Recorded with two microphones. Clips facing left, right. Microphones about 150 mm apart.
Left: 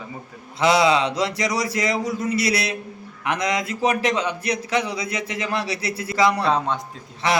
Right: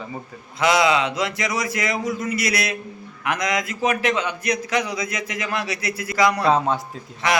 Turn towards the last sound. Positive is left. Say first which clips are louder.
# even
turn(degrees=30)  # may be behind; listen again after turning